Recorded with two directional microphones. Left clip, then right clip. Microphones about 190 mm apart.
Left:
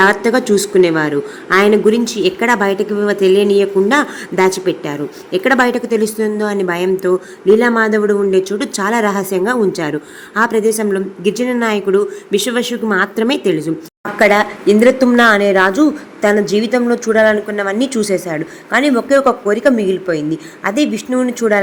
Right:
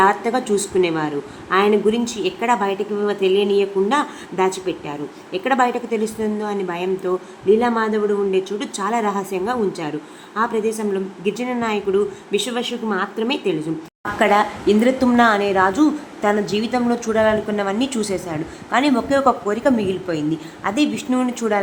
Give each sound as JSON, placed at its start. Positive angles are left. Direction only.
{"t": 0.0, "sound": "a woman's voice", "side_deg": 25}
{"t": 14.2, "sound": "a woman's voice", "side_deg": 20}